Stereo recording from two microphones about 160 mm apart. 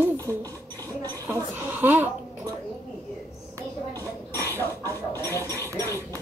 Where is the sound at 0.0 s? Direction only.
15° right (ahead or behind).